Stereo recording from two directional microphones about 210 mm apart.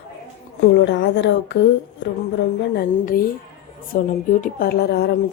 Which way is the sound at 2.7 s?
45° left (ahead or behind).